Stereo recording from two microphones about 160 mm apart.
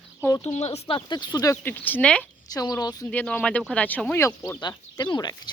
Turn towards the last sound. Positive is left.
turn(degrees=25)  # may be behind; listen again after turning